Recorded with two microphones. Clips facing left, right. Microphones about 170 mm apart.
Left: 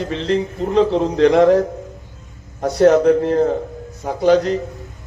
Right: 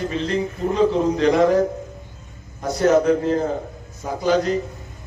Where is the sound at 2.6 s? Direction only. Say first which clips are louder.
Left 5 dB; 65° left (ahead or behind).